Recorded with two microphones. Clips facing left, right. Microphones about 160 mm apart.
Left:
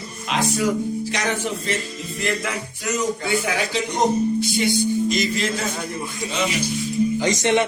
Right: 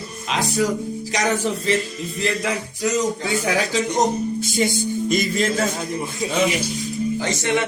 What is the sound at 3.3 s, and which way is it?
Speech, 40° right (ahead or behind).